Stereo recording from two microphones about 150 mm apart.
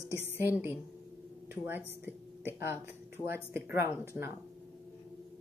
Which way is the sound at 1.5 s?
15° right (ahead or behind).